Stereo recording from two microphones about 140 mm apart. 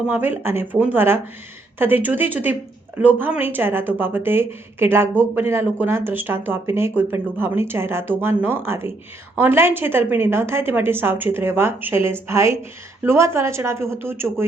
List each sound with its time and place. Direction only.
0.1 s a woman's voice: 15° right (ahead or behind)